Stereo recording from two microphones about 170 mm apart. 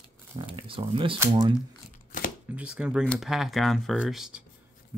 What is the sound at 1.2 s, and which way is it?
Speech, 25° right (ahead or behind).